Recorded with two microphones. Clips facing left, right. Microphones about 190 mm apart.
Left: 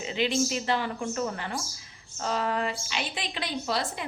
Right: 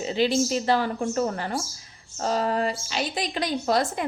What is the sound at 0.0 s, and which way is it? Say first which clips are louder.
A woman's voice: right 4 dB; 35° right (ahead or behind).